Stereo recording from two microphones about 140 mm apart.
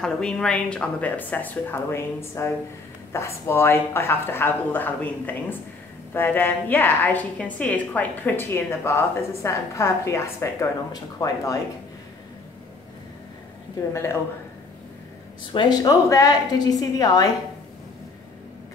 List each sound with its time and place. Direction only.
0.0 s a woman's voice: 5° left (ahead or behind); by 11.5 s 25° left (ahead or behind)
15.5 s a woman's voice: 30° left (ahead or behind)